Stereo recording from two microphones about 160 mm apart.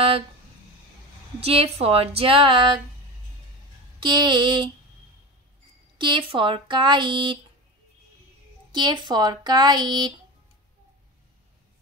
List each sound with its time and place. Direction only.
1.4 s speech: 40° right (ahead or behind)
4.0 s speech: 30° right (ahead or behind)
5.9 s speech: 30° right (ahead or behind)
8.7 s speech: 30° right (ahead or behind)